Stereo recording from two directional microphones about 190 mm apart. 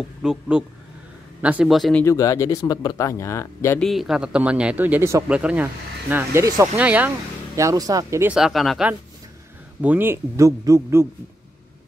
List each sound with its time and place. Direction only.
0.2 s speech: 5° right (ahead or behind)
2.0 s speech: 15° left (ahead or behind)
3.8 s speech: centre (ahead or behind)